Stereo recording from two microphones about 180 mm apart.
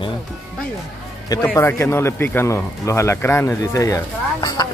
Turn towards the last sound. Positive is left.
turn(degrees=20)  # may be behind; listen again after turning